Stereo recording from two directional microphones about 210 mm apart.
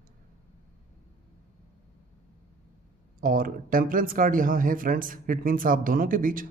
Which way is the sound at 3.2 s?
40° right (ahead or behind).